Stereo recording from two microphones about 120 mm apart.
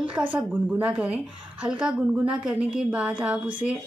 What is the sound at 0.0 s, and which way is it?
A woman's voice, 10° right (ahead or behind).